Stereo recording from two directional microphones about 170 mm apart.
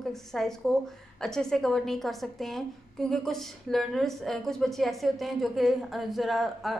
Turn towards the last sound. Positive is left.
turn(degrees=0)  # may be behind; listen again after turning